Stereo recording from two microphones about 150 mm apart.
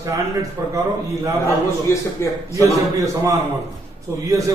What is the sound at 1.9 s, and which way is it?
Speech, 20° left (ahead or behind).